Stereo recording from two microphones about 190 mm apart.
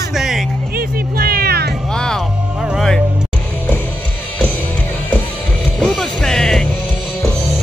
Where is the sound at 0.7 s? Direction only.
50° right (ahead or behind).